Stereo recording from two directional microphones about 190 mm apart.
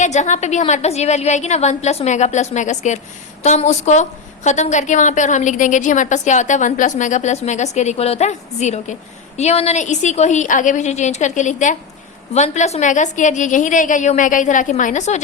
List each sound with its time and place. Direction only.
0.0 s a woman's voice: 40° left (ahead or behind)